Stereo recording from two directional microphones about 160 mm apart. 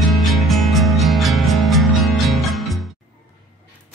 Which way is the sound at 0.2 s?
Centre (ahead or behind).